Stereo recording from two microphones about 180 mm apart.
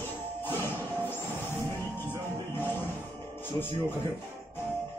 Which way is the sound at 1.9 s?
10° right (ahead or behind).